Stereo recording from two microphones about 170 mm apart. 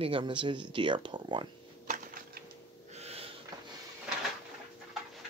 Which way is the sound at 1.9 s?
55° right (ahead or behind).